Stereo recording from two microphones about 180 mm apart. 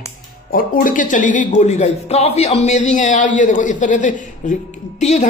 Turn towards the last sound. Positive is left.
turn(degrees=40)  # may be behind; listen again after turning